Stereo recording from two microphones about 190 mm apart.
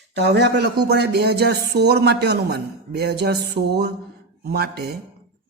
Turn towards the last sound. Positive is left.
turn(degrees=-55)  # may be behind; listen again after turning